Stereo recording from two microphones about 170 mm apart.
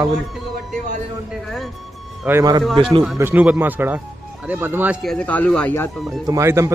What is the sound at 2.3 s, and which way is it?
Speech, 20° right (ahead or behind).